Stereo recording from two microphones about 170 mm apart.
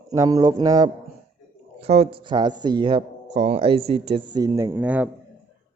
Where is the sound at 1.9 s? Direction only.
40° right (ahead or behind).